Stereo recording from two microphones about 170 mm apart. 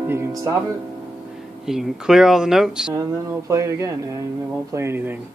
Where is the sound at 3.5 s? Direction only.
15° right (ahead or behind).